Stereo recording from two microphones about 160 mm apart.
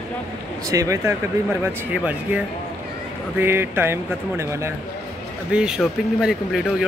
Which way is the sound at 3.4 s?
15° right (ahead or behind).